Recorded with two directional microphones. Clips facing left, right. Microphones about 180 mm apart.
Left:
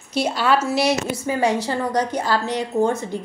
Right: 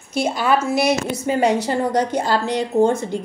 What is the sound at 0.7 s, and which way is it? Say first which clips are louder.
Speech: right 1 dB; 55° right (ahead or behind).